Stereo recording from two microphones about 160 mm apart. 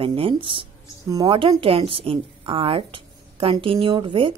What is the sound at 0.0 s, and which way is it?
A woman's voice, 35° right (ahead or behind).